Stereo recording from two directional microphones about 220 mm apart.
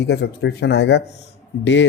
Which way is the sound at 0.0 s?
50° left (ahead or behind).